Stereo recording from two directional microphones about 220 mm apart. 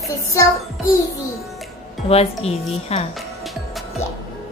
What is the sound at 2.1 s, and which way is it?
Speech, 30° left (ahead or behind).